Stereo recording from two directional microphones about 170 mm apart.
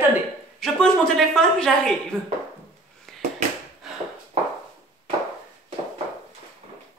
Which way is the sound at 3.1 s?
Centre (ahead or behind).